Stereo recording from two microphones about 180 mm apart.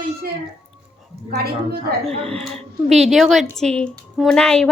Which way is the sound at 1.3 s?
60° right (ahead or behind).